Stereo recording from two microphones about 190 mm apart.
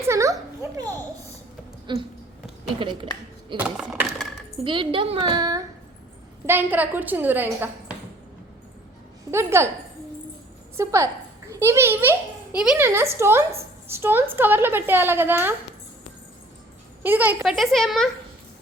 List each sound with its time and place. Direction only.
0.0 s a sound: 15° right (ahead or behind)
1.9 s a woman's voice: 25° right (ahead or behind)
3.6 s a sound: 5° right (ahead or behind)
4.6 s a woman's voice: 25° right (ahead or behind); by 7.9 s 10° right (ahead or behind)
9.3 s a woman's voice: 15° right (ahead or behind)
10.8 s a woman's voice: 15° right (ahead or behind)
17.0 s a child's voice: 10° right (ahead or behind)